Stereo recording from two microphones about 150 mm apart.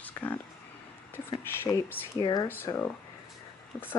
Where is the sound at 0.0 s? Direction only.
10° left (ahead or behind).